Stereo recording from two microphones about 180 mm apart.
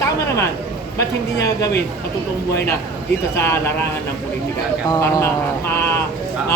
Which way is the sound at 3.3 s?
15° left (ahead or behind).